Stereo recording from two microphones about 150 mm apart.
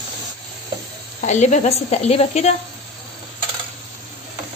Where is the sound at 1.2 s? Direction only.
50° left (ahead or behind).